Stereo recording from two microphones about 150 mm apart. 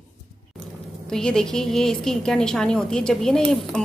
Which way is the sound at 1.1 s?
5° left (ahead or behind).